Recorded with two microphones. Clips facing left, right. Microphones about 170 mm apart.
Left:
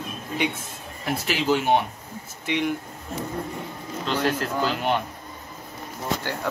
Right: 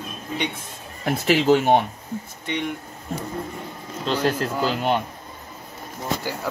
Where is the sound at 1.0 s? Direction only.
50° right (ahead or behind).